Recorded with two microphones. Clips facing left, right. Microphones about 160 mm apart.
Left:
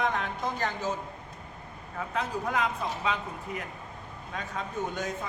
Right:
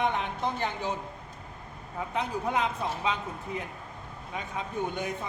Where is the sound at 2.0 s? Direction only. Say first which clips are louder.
Even; 20° right (ahead or behind).